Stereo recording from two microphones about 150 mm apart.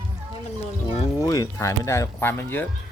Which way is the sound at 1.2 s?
20° left (ahead or behind).